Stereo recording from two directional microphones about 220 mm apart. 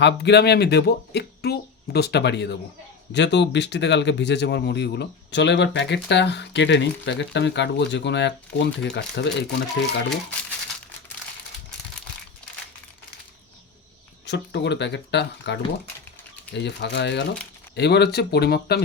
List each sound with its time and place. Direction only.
0.0 s a man's voice: 50° left (ahead or behind)
14.3 s a man's voice: 50° left (ahead or behind)